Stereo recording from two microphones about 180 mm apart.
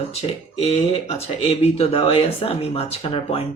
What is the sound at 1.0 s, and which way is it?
Speech, 35° left (ahead or behind).